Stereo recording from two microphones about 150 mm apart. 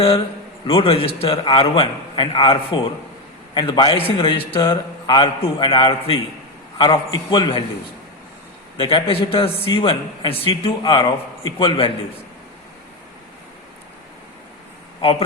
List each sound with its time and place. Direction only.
0.7 s a man's voice: 35° left (ahead or behind)
8.8 s a man's voice: 35° left (ahead or behind)